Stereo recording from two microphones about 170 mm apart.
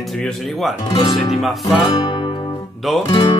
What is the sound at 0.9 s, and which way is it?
Music, 20° left (ahead or behind).